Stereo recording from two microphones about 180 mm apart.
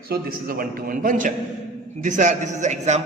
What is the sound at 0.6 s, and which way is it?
A man's voice, 50° right (ahead or behind).